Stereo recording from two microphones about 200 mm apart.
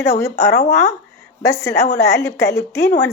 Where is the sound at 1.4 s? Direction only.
15° left (ahead or behind).